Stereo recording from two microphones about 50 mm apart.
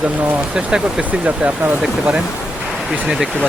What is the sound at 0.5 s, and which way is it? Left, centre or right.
Speech, centre.